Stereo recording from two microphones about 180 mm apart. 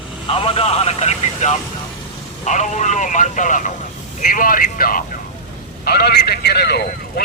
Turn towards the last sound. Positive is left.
turn(degrees=60)  # may be behind; listen again after turning